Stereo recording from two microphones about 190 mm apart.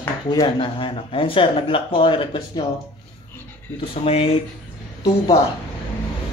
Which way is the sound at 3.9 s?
30° left (ahead or behind).